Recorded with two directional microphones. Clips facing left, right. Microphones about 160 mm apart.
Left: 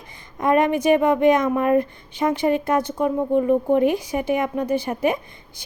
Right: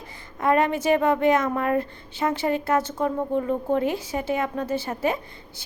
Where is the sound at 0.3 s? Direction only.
20° left (ahead or behind).